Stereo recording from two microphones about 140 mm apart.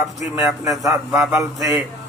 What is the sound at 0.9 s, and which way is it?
Speech, centre (ahead or behind).